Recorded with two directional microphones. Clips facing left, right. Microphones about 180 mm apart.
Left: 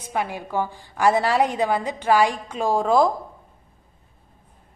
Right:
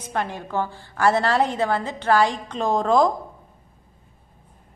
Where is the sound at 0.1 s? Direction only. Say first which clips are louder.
Left 1 dB; 10° left (ahead or behind).